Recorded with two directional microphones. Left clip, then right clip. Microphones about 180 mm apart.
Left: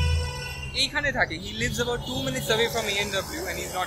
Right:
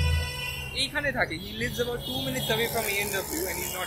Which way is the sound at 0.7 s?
10° right (ahead or behind).